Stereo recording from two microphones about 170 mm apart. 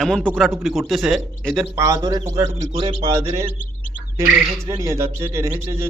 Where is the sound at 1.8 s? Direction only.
20° right (ahead or behind).